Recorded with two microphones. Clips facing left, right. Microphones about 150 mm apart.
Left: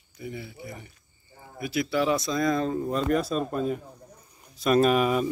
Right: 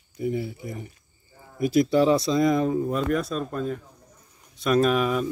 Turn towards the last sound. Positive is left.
turn(degrees=5)  # may be behind; listen again after turning